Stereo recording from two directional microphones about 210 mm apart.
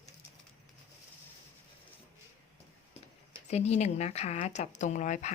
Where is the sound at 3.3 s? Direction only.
30° left (ahead or behind).